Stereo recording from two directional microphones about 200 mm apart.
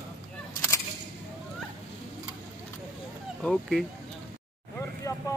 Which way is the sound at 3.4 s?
Centre (ahead or behind).